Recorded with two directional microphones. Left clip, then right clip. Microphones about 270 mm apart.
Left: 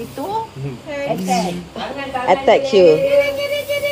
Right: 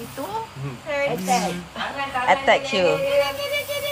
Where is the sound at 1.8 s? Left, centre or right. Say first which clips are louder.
Left 2 dB; right.